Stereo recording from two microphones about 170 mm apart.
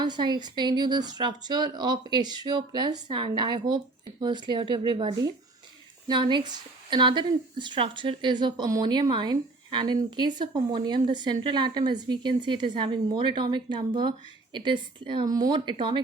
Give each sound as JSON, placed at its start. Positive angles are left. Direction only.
{"t": 0.0, "sound": "speech", "side_deg": -25}